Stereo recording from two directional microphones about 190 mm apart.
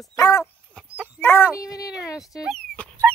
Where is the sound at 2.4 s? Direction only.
5° left (ahead or behind).